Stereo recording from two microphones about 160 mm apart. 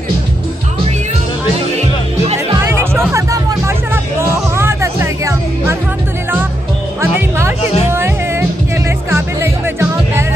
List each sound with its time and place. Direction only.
2.8 s music: 15° right (ahead or behind)
7.9 s music: 15° right (ahead or behind)